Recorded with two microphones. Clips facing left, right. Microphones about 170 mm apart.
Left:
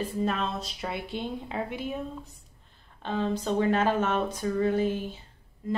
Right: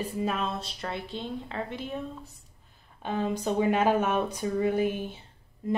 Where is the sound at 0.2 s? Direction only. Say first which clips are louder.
Left 1 dB; 5° right (ahead or behind).